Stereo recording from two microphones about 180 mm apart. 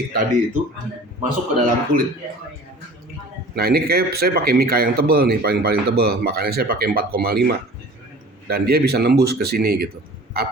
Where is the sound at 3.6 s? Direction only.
60° right (ahead or behind).